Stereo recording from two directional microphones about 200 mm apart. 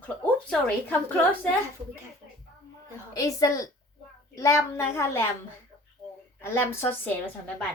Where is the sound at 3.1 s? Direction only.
15° left (ahead or behind).